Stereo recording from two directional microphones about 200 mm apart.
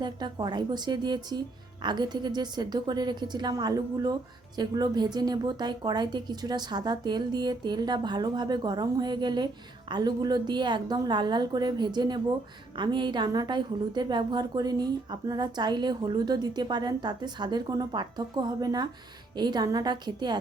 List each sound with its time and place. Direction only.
0.0 s a woman's voice: 20° right (ahead or behind)